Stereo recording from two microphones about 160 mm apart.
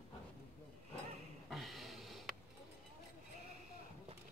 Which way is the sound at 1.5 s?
Centre (ahead or behind).